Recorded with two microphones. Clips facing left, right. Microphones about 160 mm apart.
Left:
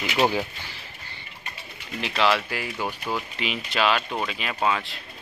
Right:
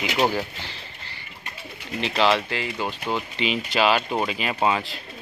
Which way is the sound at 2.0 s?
30° right (ahead or behind).